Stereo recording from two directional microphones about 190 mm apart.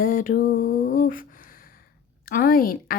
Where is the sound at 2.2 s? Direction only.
50° left (ahead or behind).